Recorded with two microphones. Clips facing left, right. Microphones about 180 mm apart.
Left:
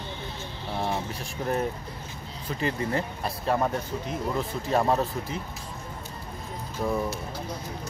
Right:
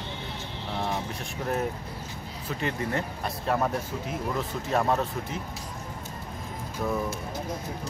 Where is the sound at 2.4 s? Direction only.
Centre (ahead or behind).